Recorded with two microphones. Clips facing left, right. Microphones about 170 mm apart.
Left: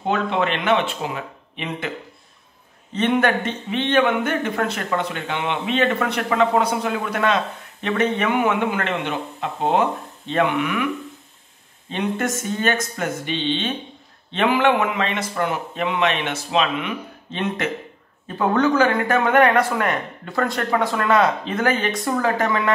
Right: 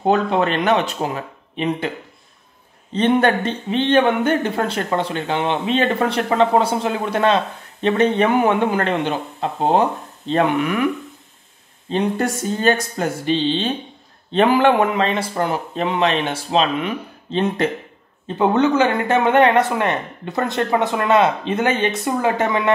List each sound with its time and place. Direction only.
0.0 s speech: 40° right (ahead or behind)
2.9 s speech: 30° right (ahead or behind)
11.9 s speech: 35° right (ahead or behind)
18.2 s speech: 20° right (ahead or behind)